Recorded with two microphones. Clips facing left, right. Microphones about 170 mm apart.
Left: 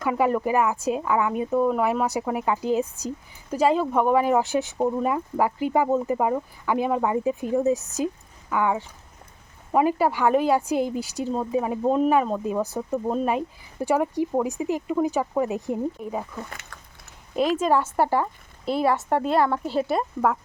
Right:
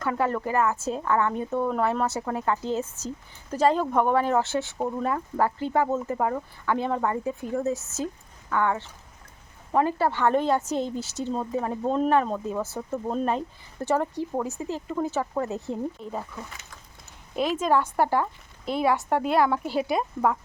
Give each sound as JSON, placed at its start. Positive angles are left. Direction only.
{"t": 0.0, "sound": "a woman's voice", "side_deg": 10}
{"t": 16.5, "sound": "speech", "side_deg": 60}
{"t": 17.6, "sound": "speech", "side_deg": 5}